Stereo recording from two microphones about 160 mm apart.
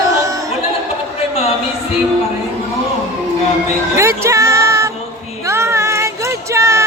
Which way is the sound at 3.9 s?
15° right (ahead or behind).